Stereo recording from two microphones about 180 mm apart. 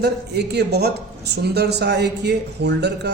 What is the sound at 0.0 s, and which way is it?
Speech, 65° right (ahead or behind).